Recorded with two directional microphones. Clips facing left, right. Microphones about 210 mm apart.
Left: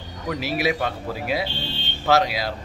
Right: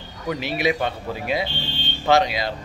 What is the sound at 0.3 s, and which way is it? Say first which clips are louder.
Speech: right 1 dB; 5° left (ahead or behind).